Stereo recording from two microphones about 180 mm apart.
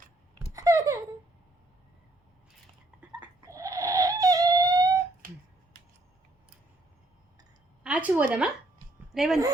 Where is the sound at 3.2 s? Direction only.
15° right (ahead or behind).